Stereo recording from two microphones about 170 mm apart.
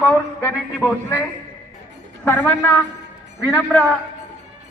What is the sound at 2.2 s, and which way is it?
A man's voice, 15° left (ahead or behind).